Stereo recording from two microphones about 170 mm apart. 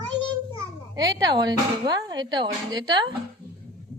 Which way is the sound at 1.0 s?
25° right (ahead or behind).